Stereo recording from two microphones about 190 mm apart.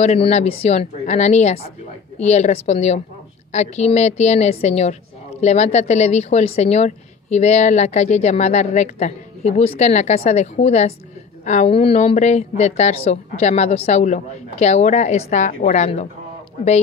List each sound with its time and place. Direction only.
0.0 s a woman's voice: 35° left (ahead or behind)